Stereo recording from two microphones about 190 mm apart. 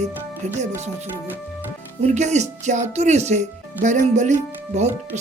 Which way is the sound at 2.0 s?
35° right (ahead or behind).